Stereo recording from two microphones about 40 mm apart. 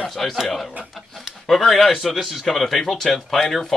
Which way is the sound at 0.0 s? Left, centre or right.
Centre.